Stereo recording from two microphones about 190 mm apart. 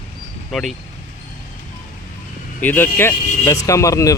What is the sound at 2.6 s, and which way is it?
Speech, 10° left (ahead or behind).